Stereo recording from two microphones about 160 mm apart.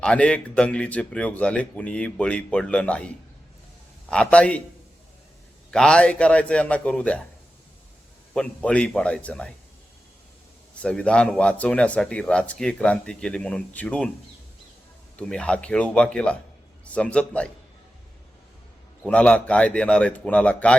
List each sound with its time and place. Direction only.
0.0 s speech: 5° left (ahead or behind)
4.1 s speech: 5° left (ahead or behind)
5.7 s speech: 5° left (ahead or behind)
8.3 s speech: 5° left (ahead or behind)
10.8 s speech: 5° left (ahead or behind)
15.1 s speech: 5° left (ahead or behind)
19.0 s speech: 10° left (ahead or behind)